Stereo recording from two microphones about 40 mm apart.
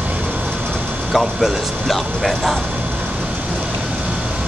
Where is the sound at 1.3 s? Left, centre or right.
Centre.